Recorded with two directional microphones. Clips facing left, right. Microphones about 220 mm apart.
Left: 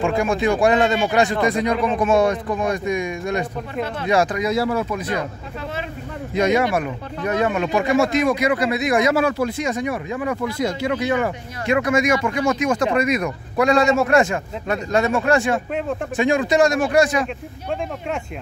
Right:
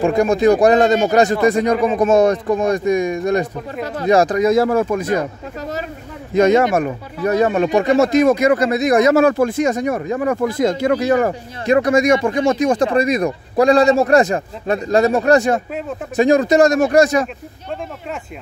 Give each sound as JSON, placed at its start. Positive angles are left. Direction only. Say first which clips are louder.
{"t": 0.0, "sound": "speech", "louder": "right 6 dB", "side_deg": -40}
{"t": 6.3, "sound": "speech", "louder": "right 5 dB", "side_deg": -45}